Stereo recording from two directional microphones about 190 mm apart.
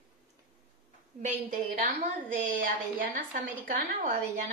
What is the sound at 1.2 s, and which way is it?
A woman's voice, 40° right (ahead or behind).